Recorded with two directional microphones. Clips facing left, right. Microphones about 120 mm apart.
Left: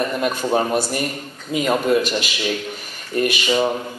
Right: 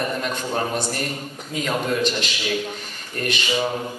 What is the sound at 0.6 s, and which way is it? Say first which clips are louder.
A man's voice: left 5 dB; 10° left (ahead or behind).